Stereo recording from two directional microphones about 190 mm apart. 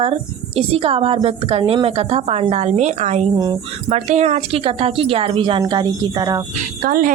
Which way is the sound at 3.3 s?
20° right (ahead or behind).